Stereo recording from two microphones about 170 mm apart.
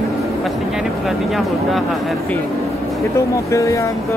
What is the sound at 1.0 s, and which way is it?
Speech, centre (ahead or behind).